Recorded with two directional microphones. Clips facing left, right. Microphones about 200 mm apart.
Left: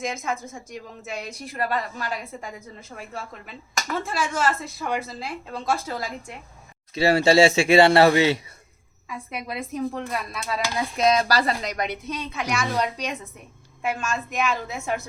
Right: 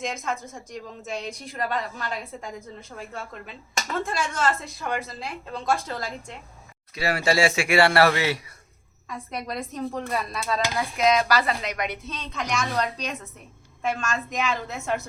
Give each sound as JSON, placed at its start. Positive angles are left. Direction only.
{"t": 0.0, "sound": "a woman's voice", "side_deg": 10}
{"t": 4.0, "sound": "a woman's voice", "side_deg": 5}
{"t": 6.9, "sound": "speech", "side_deg": 25}
{"t": 9.0, "sound": "a woman's voice", "side_deg": 5}
{"t": 10.9, "sound": "speech", "side_deg": 35}
{"t": 12.0, "sound": "a woman's voice", "side_deg": 10}